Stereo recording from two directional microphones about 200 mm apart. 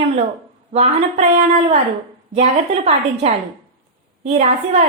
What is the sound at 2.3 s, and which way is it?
A woman's voice, 30° right (ahead or behind).